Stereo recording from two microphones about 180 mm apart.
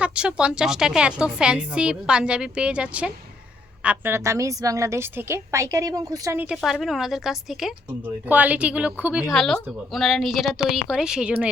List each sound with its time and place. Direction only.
0.0 s a woman's voice: 5° right (ahead or behind)
6.6 s a woman's voice: centre (ahead or behind)